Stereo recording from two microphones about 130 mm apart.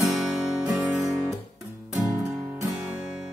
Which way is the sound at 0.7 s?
25° right (ahead or behind).